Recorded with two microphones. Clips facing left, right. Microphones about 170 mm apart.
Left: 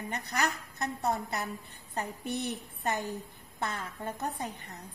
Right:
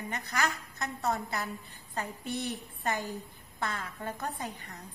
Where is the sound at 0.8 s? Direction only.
20° left (ahead or behind).